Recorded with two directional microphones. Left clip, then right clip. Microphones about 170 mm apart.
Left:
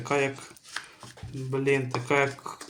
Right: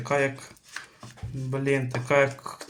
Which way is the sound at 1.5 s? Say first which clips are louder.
Left 1 dB; 10° right (ahead or behind).